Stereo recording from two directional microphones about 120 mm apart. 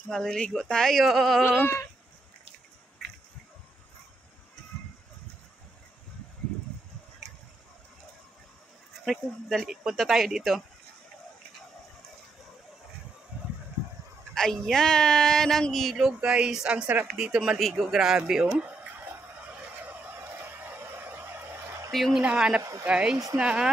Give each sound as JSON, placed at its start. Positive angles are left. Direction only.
{"t": 0.1, "sound": "speech", "side_deg": 5}
{"t": 9.0, "sound": "speech", "side_deg": 0}
{"t": 14.3, "sound": "speech", "side_deg": 5}
{"t": 19.8, "sound": "turkey", "side_deg": -15}
{"t": 21.9, "sound": "speech", "side_deg": 0}
{"t": 22.6, "sound": "a sound", "side_deg": -25}
{"t": 22.8, "sound": "speech", "side_deg": -10}